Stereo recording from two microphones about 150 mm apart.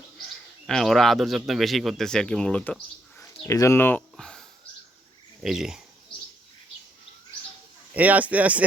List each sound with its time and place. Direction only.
0.7 s a man's voice: centre (ahead or behind)
7.9 s speech: 10° right (ahead or behind)